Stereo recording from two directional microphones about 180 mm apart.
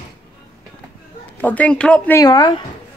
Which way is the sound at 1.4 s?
10° left (ahead or behind).